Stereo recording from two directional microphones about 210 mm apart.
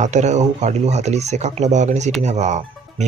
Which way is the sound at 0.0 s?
35° right (ahead or behind).